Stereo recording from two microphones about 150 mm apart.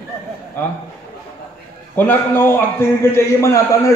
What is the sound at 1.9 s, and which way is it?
A man's voice, 10° left (ahead or behind).